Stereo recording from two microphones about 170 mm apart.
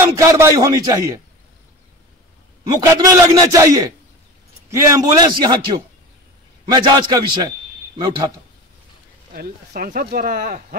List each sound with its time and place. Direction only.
0.0 s a man's voice: 20° right (ahead or behind)
2.7 s a man's voice: 20° right (ahead or behind)
9.3 s speech: 60° right (ahead or behind)